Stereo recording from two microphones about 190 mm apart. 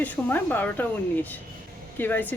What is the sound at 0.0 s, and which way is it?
Speech, 10° left (ahead or behind).